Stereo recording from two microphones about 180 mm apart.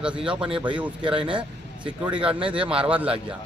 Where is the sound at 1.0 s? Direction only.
30° right (ahead or behind).